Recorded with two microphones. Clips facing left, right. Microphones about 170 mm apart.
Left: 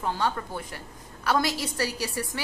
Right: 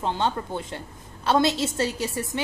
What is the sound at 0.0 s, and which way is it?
A woman's voice, 25° right (ahead or behind).